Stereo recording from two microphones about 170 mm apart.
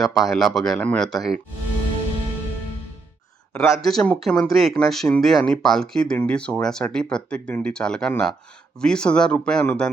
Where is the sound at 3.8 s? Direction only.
5° left (ahead or behind).